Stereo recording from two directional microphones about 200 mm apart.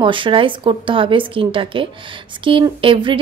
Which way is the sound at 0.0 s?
25° right (ahead or behind).